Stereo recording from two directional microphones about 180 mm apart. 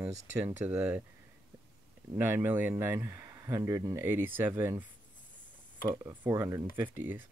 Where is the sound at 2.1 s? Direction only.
10° right (ahead or behind).